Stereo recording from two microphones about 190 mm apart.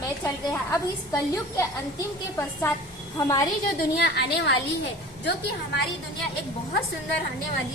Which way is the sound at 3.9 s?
60° left (ahead or behind).